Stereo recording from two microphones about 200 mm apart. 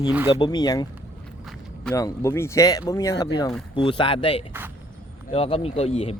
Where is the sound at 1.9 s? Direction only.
15° left (ahead or behind); by 6.1 s 30° left (ahead or behind).